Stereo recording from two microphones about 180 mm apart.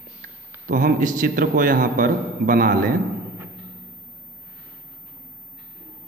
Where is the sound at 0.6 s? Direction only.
50° right (ahead or behind).